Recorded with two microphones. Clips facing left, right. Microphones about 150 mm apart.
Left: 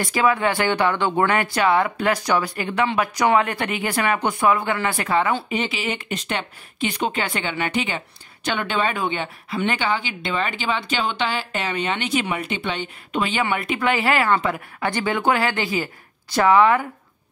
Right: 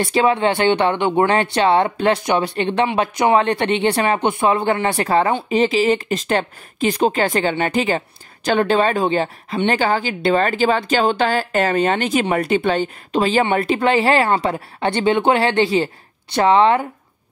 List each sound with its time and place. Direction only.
0.0 s speech: 30° right (ahead or behind)